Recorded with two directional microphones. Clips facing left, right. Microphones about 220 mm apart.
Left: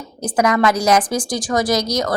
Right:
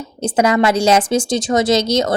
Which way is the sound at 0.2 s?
25° right (ahead or behind).